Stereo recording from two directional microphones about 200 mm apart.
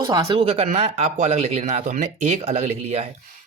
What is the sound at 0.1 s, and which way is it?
Speech, 20° right (ahead or behind).